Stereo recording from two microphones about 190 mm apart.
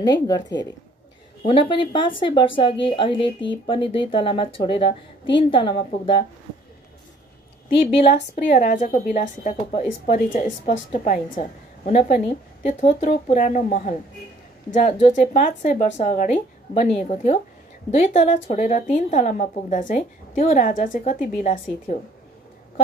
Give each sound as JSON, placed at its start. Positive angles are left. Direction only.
{"t": 0.0, "sound": "a woman's voice", "side_deg": 20}
{"t": 8.1, "sound": "a woman's voice", "side_deg": 45}